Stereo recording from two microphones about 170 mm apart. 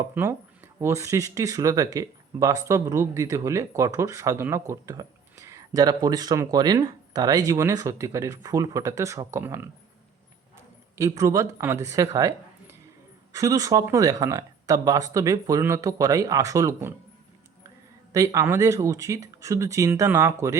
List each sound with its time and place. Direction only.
0.1 s speech: 15° right (ahead or behind)
10.9 s speech: 20° right (ahead or behind)
18.1 s speech: 20° right (ahead or behind)